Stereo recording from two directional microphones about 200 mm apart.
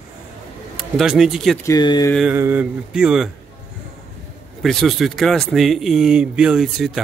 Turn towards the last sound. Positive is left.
turn(degrees=0)  # may be behind; listen again after turning